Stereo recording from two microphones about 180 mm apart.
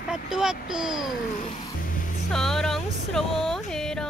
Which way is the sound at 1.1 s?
50° left (ahead or behind).